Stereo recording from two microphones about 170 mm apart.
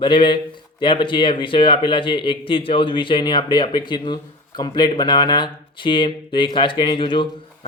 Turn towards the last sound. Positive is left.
turn(degrees=30)  # may be behind; listen again after turning